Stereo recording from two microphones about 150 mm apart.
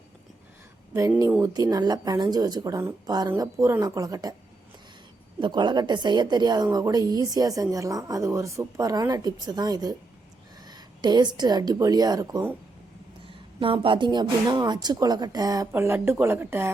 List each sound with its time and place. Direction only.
1.4 s a woman's voice: 25° right (ahead or behind)
5.4 s a woman's voice: 30° right (ahead or behind)
13.6 s a woman's voice: 35° right (ahead or behind); by 16.7 s 15° right (ahead or behind)